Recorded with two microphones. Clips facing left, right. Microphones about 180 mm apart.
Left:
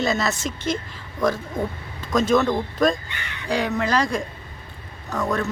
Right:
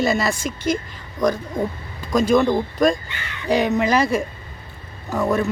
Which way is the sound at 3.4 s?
10° right (ahead or behind).